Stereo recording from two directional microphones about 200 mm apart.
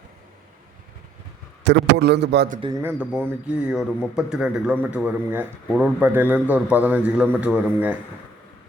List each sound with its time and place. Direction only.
1.6 s a man's voice: 55° right (ahead or behind)
2.6 s speech: 20° right (ahead or behind)
2.8 s speech: 5° right (ahead or behind)